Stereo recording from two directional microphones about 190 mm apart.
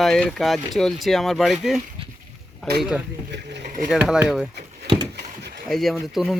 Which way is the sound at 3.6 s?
45° right (ahead or behind).